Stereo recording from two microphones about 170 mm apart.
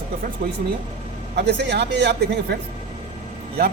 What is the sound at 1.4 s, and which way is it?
A man's voice, 85° right.